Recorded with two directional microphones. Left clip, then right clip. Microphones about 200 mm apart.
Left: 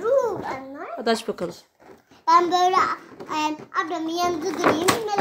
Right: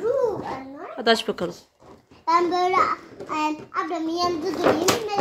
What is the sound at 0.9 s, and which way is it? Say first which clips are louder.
Speech: right 3 dB; 5° left (ahead or behind).